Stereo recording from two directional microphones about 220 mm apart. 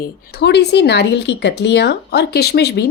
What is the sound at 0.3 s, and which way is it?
Speech, 50° left (ahead or behind).